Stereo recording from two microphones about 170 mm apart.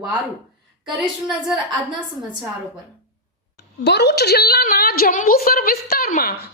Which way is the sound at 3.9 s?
80° left.